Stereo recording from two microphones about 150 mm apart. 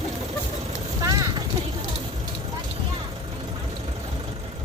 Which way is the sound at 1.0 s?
25° right (ahead or behind).